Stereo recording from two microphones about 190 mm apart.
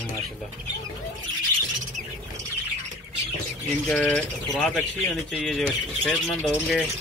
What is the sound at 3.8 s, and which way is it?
Speech, 5° left (ahead or behind).